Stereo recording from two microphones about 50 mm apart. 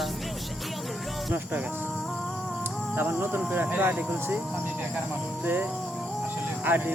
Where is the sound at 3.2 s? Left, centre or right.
Right.